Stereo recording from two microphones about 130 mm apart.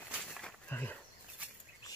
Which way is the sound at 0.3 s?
Centre (ahead or behind).